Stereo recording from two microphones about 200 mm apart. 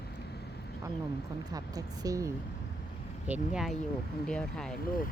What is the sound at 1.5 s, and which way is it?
Speech, 20° right (ahead or behind).